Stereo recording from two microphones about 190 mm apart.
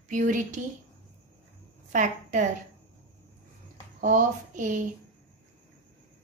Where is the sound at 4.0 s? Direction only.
40° right (ahead or behind).